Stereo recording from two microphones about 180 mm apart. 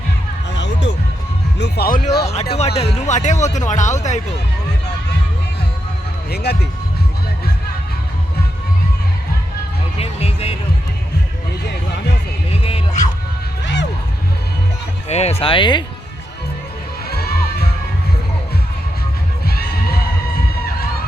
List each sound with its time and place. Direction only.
0.5 s music: 85° left
1.5 s speech: 70° left (ahead or behind)
2.2 s speech: 35° left (ahead or behind)
6.3 s speech: 65° left (ahead or behind)
10.0 s speech: 35° left (ahead or behind)
12.6 s music: 35° left (ahead or behind)
15.1 s speech: 35° left (ahead or behind)
17.1 s music: 60° left (ahead or behind)
19.5 s a sound: 60° left (ahead or behind)